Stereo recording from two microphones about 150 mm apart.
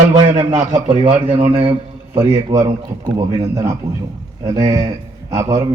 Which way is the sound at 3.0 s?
20° right (ahead or behind).